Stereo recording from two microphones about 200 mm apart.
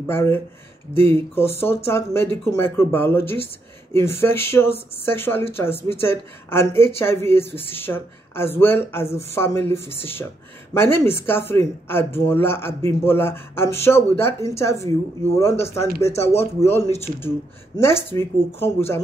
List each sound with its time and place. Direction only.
0.0 s speech: 10° left (ahead or behind)
16.1 s speech: 30° left (ahead or behind)
16.3 s speech: 10° left (ahead or behind)